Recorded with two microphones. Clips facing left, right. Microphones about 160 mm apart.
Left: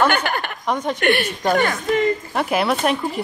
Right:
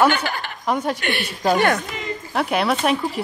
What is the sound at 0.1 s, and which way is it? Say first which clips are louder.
Speech: left 2 dB; 55° left (ahead or behind).